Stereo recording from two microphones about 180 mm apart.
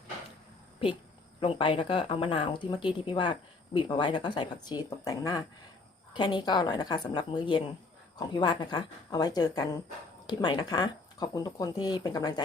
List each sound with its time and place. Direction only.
1.4 s speech: 30° left (ahead or behind)